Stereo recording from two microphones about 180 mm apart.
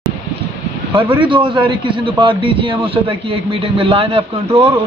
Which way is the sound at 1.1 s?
25° right (ahead or behind).